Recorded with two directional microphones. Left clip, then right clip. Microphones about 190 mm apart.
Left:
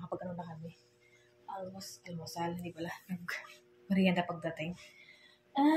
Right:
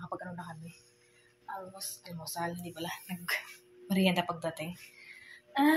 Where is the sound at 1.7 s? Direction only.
5° left (ahead or behind).